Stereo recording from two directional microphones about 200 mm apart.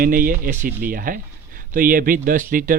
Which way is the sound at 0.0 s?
45° right (ahead or behind).